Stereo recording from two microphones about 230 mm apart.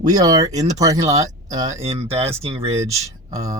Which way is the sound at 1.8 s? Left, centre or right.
Right.